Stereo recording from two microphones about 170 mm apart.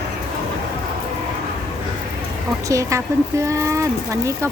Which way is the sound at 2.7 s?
20° right (ahead or behind).